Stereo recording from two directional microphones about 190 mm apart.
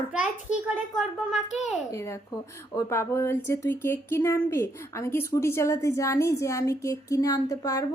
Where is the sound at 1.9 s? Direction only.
15° left (ahead or behind).